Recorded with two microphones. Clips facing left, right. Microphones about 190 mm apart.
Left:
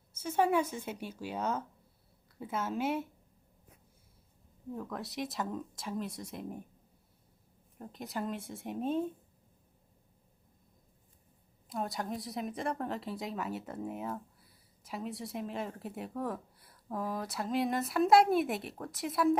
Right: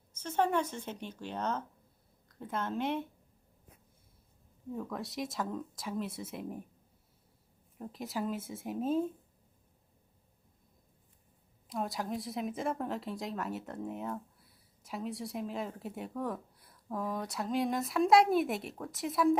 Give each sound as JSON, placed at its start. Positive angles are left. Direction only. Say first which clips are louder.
{"t": 0.2, "sound": "a woman's voice", "louder": "left 2 dB", "side_deg": 10}
{"t": 4.7, "sound": "a woman's voice", "louder": "right 1 dB", "side_deg": 0}
{"t": 7.8, "sound": "a woman's voice", "louder": "right 2 dB", "side_deg": 0}
{"t": 11.7, "sound": "a woman's voice", "louder": "right 1 dB", "side_deg": 0}